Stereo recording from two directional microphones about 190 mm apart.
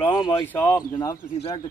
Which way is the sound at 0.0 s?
15° left (ahead or behind).